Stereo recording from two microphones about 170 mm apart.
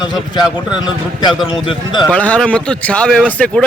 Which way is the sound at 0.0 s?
25° left (ahead or behind).